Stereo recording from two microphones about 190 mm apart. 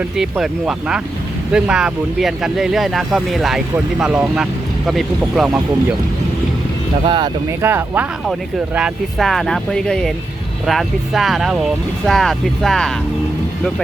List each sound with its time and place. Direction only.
0.2 s speech: 5° right (ahead or behind)
7.0 s speech: 25° right (ahead or behind)
7.6 s speech: 10° right (ahead or behind)